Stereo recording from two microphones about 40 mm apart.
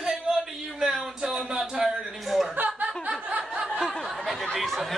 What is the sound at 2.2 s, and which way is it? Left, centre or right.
Chuckle, centre.